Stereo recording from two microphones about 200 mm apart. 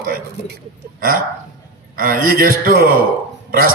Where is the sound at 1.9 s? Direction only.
45° right (ahead or behind).